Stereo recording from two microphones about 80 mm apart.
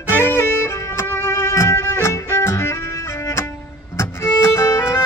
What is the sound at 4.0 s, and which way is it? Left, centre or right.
Violin, left.